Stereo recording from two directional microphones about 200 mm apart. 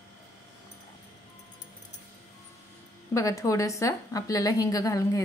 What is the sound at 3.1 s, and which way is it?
A woman's voice, 15° left (ahead or behind).